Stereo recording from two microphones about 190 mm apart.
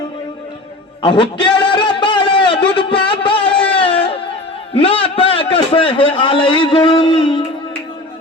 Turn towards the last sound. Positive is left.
turn(degrees=25)  # may be behind; listen again after turning